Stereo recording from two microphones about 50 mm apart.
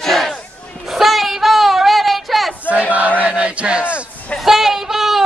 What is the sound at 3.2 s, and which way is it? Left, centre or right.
Chant, right.